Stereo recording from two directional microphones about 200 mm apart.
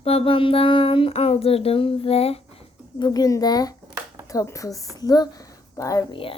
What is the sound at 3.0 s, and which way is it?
A child's voice, 20° left (ahead or behind).